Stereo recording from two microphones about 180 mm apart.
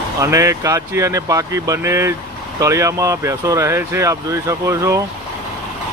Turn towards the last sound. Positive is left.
turn(degrees=-15)  # may be behind; listen again after turning